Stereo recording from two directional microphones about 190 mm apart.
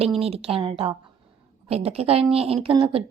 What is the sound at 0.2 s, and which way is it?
A woman's voice, 30° right (ahead or behind).